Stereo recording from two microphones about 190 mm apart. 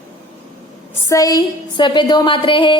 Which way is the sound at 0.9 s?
15° left (ahead or behind).